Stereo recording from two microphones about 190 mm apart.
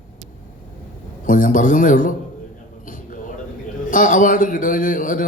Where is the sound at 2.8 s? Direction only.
45° left (ahead or behind).